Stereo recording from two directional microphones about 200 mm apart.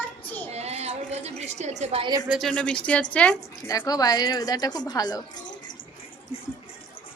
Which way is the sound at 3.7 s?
20° left (ahead or behind).